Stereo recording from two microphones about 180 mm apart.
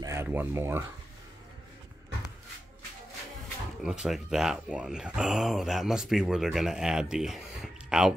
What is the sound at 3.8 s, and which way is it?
Speech, 5° right (ahead or behind).